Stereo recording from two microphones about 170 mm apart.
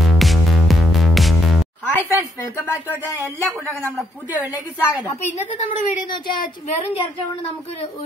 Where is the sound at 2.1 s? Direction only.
15° left (ahead or behind).